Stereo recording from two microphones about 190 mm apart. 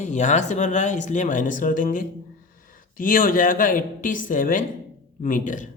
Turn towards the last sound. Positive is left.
turn(degrees=45)  # may be behind; listen again after turning